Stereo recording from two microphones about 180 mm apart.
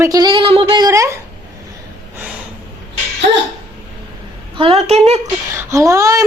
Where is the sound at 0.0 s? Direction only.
20° right (ahead or behind).